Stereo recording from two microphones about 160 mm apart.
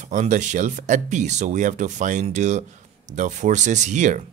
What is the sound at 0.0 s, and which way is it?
Speech, 50° right (ahead or behind).